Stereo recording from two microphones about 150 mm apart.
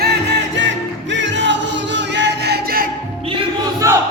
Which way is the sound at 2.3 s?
90° right.